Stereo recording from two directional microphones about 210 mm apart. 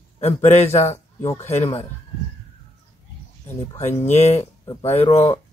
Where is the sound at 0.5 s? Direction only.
30° left (ahead or behind).